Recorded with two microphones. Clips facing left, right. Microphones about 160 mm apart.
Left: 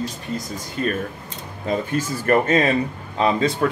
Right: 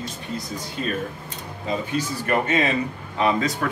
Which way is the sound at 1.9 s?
45° left (ahead or behind).